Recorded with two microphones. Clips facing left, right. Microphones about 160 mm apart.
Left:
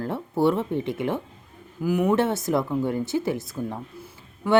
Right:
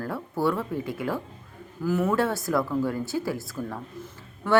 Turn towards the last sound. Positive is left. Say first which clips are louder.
# left 2 dB
turn(degrees=15)  # may be behind; listen again after turning